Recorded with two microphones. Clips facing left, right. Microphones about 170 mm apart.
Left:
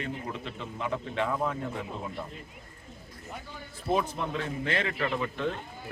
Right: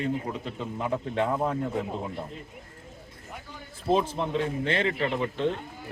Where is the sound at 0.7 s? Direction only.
35° right (ahead or behind).